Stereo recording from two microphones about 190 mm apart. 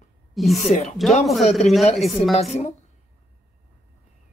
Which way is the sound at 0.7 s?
35° left (ahead or behind).